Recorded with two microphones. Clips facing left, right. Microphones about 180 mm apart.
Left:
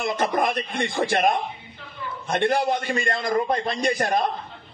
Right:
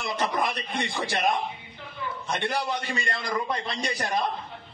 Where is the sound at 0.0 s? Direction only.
50° left (ahead or behind).